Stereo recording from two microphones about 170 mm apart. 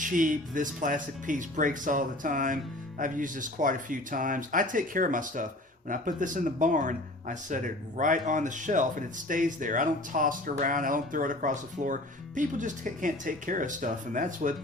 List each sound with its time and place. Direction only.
0.0 s speech: 50° right (ahead or behind)